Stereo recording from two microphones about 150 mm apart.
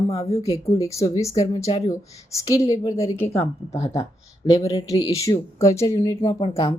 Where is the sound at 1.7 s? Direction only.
40° left (ahead or behind).